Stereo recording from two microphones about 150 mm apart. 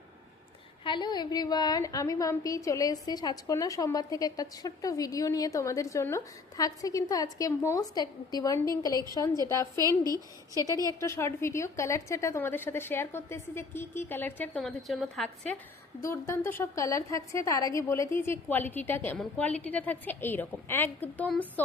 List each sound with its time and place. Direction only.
0.9 s a woman's voice: 30° left (ahead or behind); by 15.3 s centre (ahead or behind)
16.0 s a woman's voice: 20° left (ahead or behind)